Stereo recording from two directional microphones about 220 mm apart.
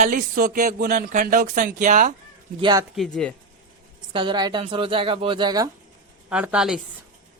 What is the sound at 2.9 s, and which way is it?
Speech, centre (ahead or behind).